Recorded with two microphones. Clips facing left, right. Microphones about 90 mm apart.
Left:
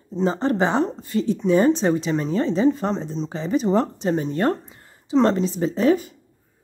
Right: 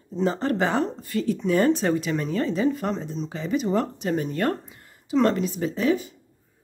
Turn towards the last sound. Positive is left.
turn(degrees=45)  # may be behind; listen again after turning